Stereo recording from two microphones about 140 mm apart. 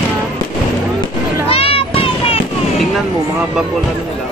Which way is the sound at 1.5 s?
40° left (ahead or behind).